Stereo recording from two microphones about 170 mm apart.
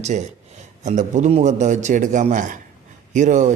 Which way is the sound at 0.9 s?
45° right (ahead or behind).